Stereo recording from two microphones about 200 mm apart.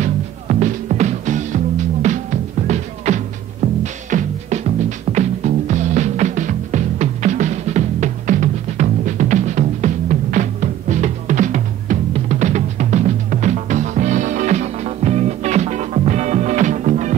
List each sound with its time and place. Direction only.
0.0 s music: 40° right (ahead or behind)